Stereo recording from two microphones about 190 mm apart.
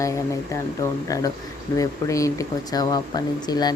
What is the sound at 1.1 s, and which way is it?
Speech, 20° left (ahead or behind).